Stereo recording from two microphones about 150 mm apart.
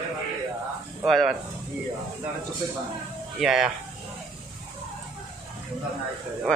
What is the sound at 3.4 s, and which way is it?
Speech, 5° right (ahead or behind).